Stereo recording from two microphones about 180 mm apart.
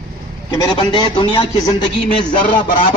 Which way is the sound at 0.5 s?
20° left (ahead or behind).